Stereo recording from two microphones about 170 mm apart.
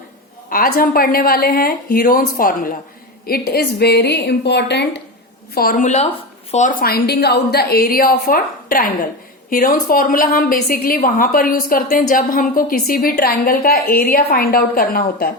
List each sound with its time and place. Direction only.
0.5 s a woman's voice: 60° left (ahead or behind); by 5.0 s 80° left
5.5 s a woman's voice: 55° left (ahead or behind)